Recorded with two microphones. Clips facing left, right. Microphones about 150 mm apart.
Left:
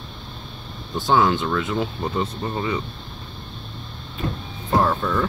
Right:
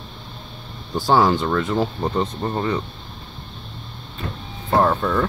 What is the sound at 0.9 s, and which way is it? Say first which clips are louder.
Speech: right 2 dB; centre (ahead or behind).